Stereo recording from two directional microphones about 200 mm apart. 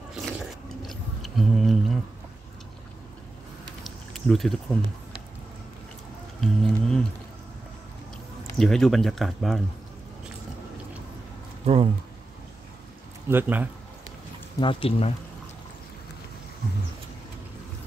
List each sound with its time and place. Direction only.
0.1 s a sound: centre (ahead or behind)
3.8 s a sound: centre (ahead or behind)
6.4 s speech: centre (ahead or behind)
8.5 s speech: centre (ahead or behind)
11.6 s speech: 30° right (ahead or behind)
13.3 s speech: 10° right (ahead or behind)
14.6 s speech: 25° left (ahead or behind)